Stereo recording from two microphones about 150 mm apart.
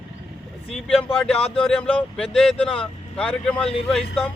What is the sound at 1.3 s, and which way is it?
Speech, 35° left (ahead or behind).